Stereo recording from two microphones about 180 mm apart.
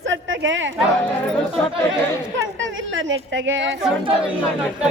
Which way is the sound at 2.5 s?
90° right.